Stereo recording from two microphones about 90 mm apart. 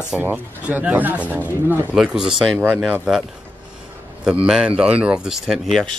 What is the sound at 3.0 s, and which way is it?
Speech, 5° right (ahead or behind).